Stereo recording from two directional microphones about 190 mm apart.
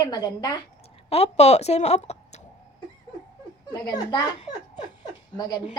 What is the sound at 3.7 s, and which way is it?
Speech, 20° left (ahead or behind).